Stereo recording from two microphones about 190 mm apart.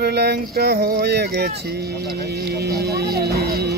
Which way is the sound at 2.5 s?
55° right (ahead or behind).